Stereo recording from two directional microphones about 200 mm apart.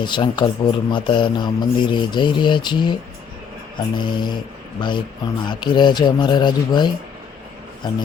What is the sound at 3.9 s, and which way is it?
Speech, 25° left (ahead or behind).